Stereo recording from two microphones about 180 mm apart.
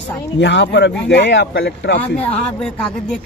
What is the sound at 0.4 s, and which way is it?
Speech, 75° left (ahead or behind).